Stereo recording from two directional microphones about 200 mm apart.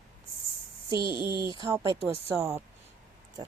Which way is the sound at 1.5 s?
20° right (ahead or behind).